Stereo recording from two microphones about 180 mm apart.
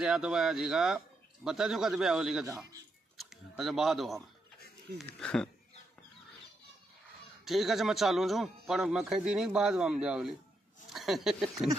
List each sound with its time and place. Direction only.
0.0 s a man's voice: 5° right (ahead or behind)
2.4 s a man's voice: 20° right (ahead or behind)
3.2 s a sound: centre (ahead or behind)
4.9 s a man's voice: 5° left (ahead or behind)
7.4 s a man's voice: centre (ahead or behind)